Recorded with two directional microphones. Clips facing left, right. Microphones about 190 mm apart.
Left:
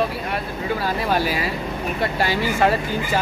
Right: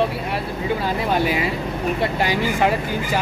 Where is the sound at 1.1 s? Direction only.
20° right (ahead or behind).